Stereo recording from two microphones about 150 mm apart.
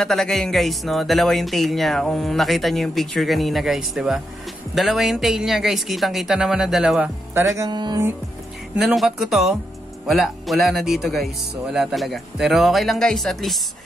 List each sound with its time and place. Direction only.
0.0 s speech: centre (ahead or behind)
7.3 s music: 20° right (ahead or behind)
8.7 s speech: centre (ahead or behind)